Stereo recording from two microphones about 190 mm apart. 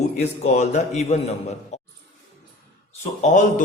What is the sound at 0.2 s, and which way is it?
A man's voice, 40° left (ahead or behind).